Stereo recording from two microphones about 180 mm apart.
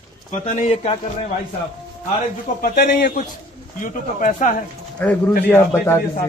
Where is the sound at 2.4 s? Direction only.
60° left (ahead or behind).